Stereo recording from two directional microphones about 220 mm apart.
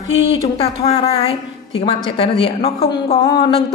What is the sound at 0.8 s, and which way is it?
A woman's voice, 15° left (ahead or behind).